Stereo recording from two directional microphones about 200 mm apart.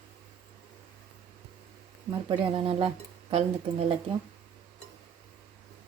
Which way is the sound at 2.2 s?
25° right (ahead or behind).